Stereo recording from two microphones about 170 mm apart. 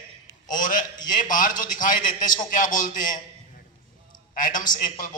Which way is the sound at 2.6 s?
50° left (ahead or behind).